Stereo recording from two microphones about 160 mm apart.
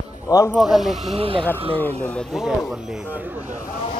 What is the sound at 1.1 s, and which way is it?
Speech, 35° right (ahead or behind).